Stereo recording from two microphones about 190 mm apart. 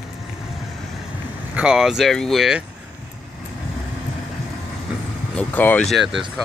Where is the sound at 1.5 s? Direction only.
5° right (ahead or behind).